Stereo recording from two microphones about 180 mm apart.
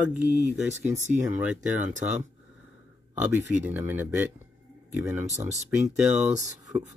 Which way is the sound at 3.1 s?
10° right (ahead or behind).